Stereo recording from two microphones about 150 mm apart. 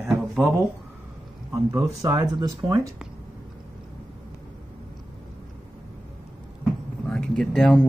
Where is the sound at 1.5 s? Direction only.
20° right (ahead or behind).